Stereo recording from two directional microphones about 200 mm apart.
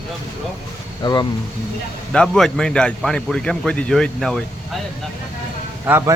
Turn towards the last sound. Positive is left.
turn(degrees=-5)  # may be behind; listen again after turning